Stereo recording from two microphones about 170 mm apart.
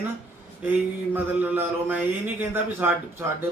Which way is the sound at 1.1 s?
10° right (ahead or behind).